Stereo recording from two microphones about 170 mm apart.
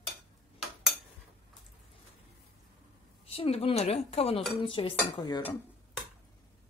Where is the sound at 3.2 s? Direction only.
35° left (ahead or behind).